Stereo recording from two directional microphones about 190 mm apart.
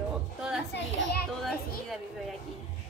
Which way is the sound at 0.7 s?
65° left (ahead or behind).